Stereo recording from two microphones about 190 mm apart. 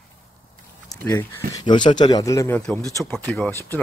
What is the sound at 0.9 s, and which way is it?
Speech, 15° left (ahead or behind).